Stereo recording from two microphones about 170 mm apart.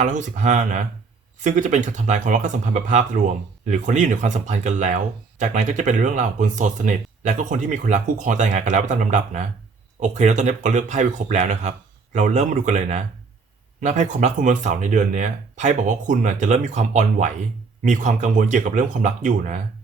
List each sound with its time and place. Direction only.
0.0 s speech: 45° right (ahead or behind)